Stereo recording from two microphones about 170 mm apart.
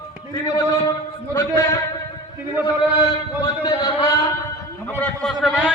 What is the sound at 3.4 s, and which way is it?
A man's voice, 30° left (ahead or behind).